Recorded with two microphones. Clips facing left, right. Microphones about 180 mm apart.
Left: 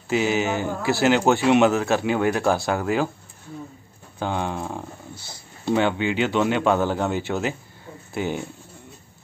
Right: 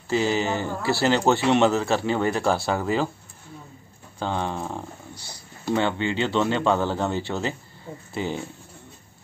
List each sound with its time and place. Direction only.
0.1 s speech: 10° left (ahead or behind)
4.2 s speech: 10° left (ahead or behind)
5.1 s a sound: 25° left (ahead or behind)
5.8 s speech: 10° left (ahead or behind)